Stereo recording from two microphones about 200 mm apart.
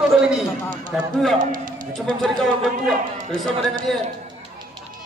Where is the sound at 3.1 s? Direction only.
40° right (ahead or behind).